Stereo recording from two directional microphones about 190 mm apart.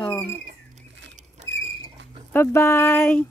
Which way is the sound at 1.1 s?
35° right (ahead or behind).